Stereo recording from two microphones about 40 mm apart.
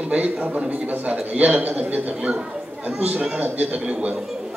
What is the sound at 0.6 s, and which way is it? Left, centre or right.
Speech, right.